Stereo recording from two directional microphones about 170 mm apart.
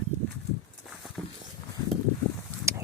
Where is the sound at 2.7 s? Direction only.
15° right (ahead or behind).